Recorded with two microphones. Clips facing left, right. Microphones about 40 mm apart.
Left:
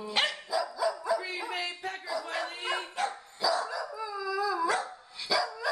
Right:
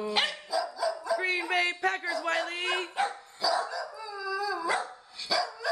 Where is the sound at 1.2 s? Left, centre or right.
Right.